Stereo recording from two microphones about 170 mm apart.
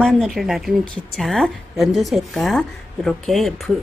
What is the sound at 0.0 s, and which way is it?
A woman's voice, centre (ahead or behind).